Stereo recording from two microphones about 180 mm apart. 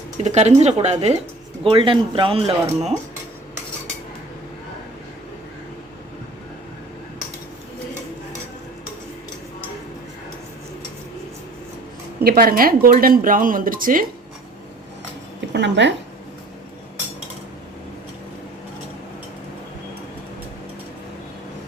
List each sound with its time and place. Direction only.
0.2 s speech: 40° right (ahead or behind)
12.2 s speech: 55° right (ahead or behind)
15.5 s speech: 80° right